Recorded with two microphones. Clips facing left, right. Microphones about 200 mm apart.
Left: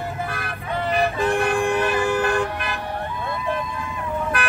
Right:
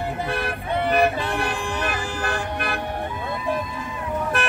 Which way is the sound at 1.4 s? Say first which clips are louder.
Left 6 dB; 55° left (ahead or behind).